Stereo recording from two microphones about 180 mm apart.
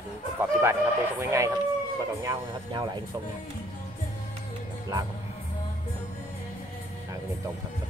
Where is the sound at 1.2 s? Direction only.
15° right (ahead or behind).